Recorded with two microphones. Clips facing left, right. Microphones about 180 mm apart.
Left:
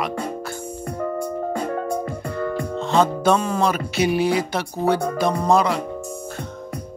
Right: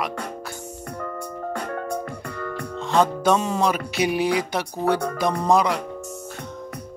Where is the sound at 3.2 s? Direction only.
15° right (ahead or behind).